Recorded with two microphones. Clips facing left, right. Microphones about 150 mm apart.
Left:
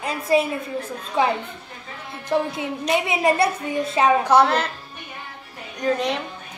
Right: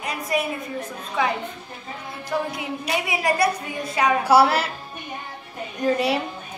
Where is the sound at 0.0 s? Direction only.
30° left (ahead or behind).